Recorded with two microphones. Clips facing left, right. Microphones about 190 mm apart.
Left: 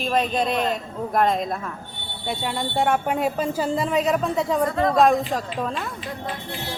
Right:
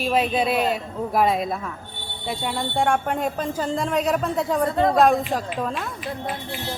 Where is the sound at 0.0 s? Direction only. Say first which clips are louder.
Right 1 dB; 5° right (ahead or behind).